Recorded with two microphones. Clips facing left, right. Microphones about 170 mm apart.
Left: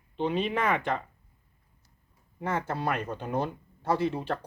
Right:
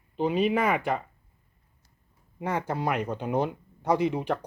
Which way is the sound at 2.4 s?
15° right (ahead or behind).